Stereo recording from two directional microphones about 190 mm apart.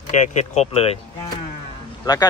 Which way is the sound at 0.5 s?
35° left (ahead or behind).